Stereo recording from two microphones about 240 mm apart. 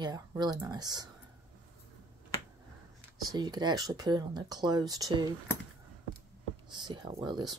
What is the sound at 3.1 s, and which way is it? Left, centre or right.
Speech, centre.